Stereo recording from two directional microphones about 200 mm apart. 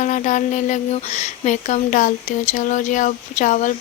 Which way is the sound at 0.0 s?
40° left (ahead or behind).